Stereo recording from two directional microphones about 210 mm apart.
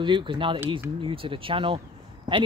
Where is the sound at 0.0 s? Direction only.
20° right (ahead or behind).